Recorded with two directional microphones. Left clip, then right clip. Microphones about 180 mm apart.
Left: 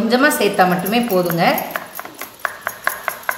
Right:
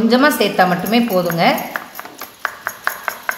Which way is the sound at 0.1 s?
20° right (ahead or behind).